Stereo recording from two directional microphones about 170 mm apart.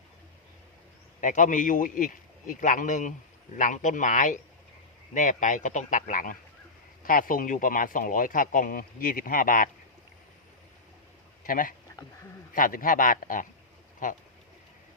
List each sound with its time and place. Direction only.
1.2 s a man's voice: 50° left (ahead or behind)
11.4 s a man's voice: 55° left (ahead or behind)